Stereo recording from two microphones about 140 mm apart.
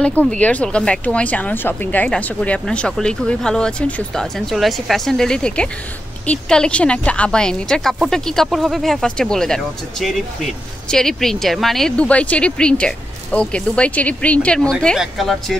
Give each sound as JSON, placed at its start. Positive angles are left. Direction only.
{"t": 0.3, "sound": "speech", "side_deg": 10}